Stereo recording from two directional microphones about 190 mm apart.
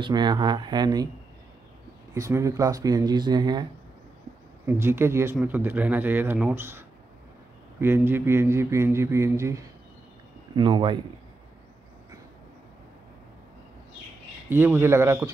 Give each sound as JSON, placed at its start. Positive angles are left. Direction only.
{"t": 0.0, "sound": "speech", "side_deg": -20}
{"t": 2.1, "sound": "speech", "side_deg": -15}
{"t": 4.6, "sound": "a man's voice", "side_deg": -15}
{"t": 7.8, "sound": "a man's voice", "side_deg": -10}
{"t": 10.5, "sound": "speech", "side_deg": -25}
{"t": 14.5, "sound": "a man's voice", "side_deg": -10}